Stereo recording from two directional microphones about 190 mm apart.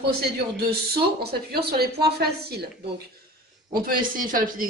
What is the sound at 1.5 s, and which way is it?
Speech, 55° right (ahead or behind).